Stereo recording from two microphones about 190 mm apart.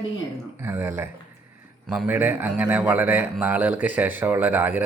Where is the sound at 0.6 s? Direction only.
10° right (ahead or behind).